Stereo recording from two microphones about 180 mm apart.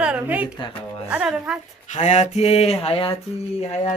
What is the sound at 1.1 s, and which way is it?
Speech, 5° right (ahead or behind).